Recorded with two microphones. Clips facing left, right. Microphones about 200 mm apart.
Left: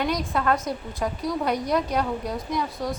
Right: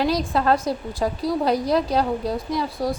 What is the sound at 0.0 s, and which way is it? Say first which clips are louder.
A woman's voice: right 4 dB; 30° right (ahead or behind).